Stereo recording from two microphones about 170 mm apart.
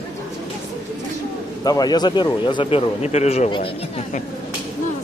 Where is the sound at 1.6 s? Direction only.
20° left (ahead or behind).